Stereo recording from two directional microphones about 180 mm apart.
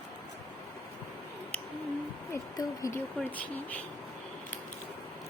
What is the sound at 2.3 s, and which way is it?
Speech, 15° left (ahead or behind).